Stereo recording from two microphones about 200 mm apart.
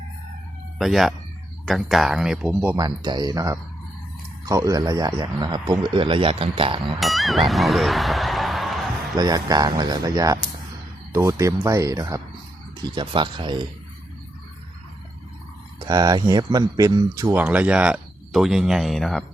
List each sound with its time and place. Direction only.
0.8 s speech: centre (ahead or behind)
2.7 s speech: 20° right (ahead or behind)
7.0 s music: centre (ahead or behind)
9.1 s speech: 20° right (ahead or behind)
15.8 s speech: 20° right (ahead or behind)
17.3 s speech: 10° right (ahead or behind)